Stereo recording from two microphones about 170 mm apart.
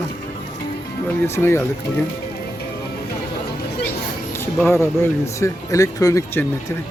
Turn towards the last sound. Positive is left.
turn(degrees=20)  # may be behind; listen again after turning